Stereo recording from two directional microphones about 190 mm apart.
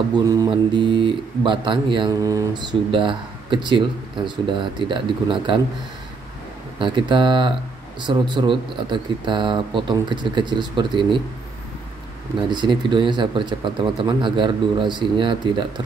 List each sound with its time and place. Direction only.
0.1 s speech: 20° right (ahead or behind)
6.8 s speech: 25° right (ahead or behind)
12.4 s speech: 25° right (ahead or behind)